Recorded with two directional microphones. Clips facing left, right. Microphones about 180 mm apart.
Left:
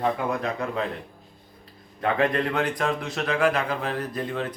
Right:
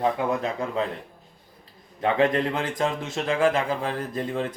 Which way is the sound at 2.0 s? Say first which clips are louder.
Right 2 dB; 25° right (ahead or behind).